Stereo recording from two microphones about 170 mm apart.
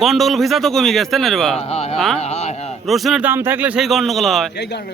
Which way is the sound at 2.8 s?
Centre (ahead or behind).